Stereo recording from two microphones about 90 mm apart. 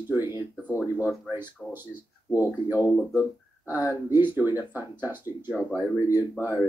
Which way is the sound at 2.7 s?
40° left (ahead or behind).